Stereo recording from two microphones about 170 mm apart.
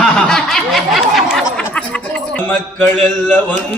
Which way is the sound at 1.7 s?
5° left (ahead or behind).